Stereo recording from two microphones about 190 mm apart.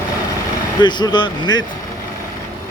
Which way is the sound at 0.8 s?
25° left (ahead or behind).